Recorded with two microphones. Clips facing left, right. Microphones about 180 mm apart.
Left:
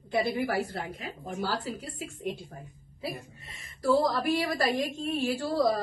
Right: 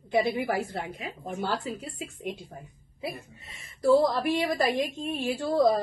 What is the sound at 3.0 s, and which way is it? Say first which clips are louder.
Speech: right 1 dB; 20° right (ahead or behind).